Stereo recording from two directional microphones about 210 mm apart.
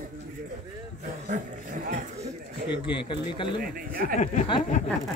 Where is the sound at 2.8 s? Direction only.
25° left (ahead or behind).